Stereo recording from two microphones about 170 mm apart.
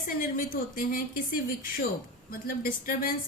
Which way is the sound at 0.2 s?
55° left (ahead or behind).